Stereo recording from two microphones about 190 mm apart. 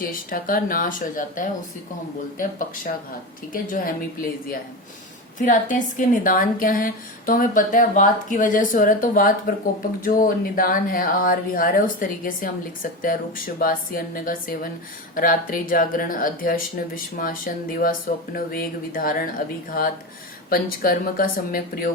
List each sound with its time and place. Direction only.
0.0 s speech: 45° left (ahead or behind)
20.5 s speech: 50° left (ahead or behind)